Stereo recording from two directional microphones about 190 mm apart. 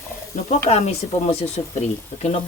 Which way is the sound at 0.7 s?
35° left (ahead or behind).